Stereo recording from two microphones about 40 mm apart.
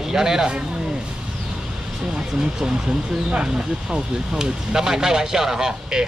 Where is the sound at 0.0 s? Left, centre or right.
Centre.